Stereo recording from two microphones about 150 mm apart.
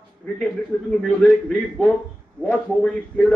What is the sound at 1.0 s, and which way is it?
A man's voice, 5° left (ahead or behind).